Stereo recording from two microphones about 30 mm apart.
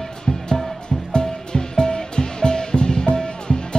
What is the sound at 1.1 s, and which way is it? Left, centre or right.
Music, left.